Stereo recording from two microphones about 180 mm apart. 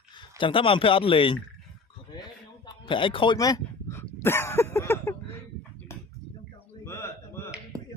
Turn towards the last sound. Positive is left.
turn(degrees=15)  # may be behind; listen again after turning